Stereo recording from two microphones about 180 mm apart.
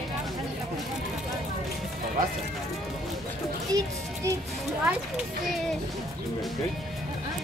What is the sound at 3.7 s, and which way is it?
Music, 20° right (ahead or behind).